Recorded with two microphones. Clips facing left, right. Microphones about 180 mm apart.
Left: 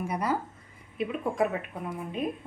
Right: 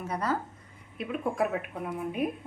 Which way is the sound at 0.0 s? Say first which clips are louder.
Left 1 dB; 10° left (ahead or behind).